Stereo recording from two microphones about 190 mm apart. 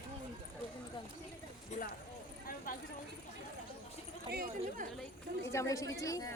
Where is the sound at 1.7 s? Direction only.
45° left (ahead or behind).